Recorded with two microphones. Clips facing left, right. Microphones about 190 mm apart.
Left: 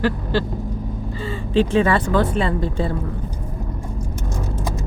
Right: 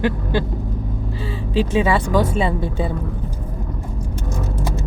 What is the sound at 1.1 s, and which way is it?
Speech, 5° right (ahead or behind).